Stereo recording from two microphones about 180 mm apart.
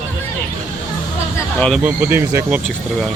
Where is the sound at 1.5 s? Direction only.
5° left (ahead or behind).